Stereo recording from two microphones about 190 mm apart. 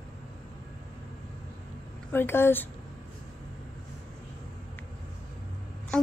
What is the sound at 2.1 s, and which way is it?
Speech, 10° left (ahead or behind).